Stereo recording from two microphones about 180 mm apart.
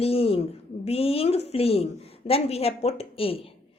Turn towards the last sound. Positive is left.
turn(degrees=30)  # may be behind; listen again after turning